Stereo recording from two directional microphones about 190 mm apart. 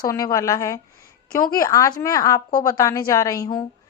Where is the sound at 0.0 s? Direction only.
20° left (ahead or behind).